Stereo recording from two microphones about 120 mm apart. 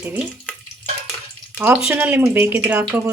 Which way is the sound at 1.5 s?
15° right (ahead or behind).